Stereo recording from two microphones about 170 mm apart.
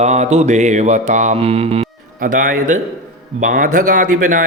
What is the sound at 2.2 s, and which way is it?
A man's voice, 55° right (ahead or behind).